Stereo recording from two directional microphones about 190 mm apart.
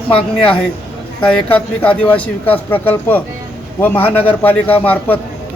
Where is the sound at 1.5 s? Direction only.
5° left (ahead or behind).